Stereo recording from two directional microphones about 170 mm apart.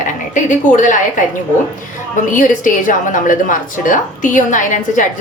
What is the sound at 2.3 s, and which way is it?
A woman's voice, 50° left (ahead or behind).